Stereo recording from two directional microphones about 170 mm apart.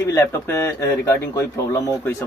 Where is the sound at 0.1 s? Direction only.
15° left (ahead or behind).